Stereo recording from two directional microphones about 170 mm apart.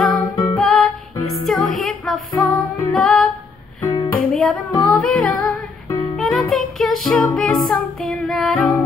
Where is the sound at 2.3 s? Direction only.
25° left (ahead or behind).